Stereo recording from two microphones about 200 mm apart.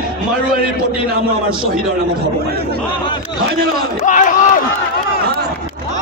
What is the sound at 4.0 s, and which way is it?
Speech, 40° left (ahead or behind).